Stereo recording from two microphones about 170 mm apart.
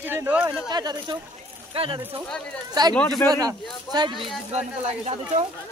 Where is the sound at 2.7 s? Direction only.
25° right (ahead or behind).